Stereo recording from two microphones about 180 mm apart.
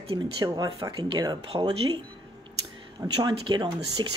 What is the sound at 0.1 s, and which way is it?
Speech, 25° right (ahead or behind).